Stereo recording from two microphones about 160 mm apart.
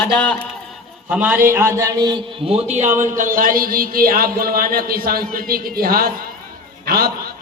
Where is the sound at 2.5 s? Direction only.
40° right (ahead or behind).